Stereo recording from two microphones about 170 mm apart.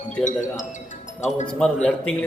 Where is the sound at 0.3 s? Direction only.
45° left (ahead or behind).